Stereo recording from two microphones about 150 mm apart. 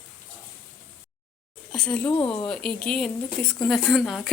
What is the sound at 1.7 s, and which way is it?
Speech, 5° left (ahead or behind).